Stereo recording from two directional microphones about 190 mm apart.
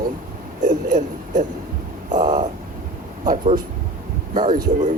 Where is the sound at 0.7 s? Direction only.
45° right (ahead or behind).